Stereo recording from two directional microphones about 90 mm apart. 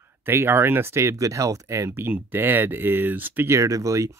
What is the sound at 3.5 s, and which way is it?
Speech, 35° right (ahead or behind).